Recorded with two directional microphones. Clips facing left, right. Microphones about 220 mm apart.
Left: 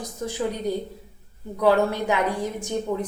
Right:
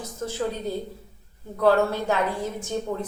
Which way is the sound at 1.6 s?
15° left (ahead or behind).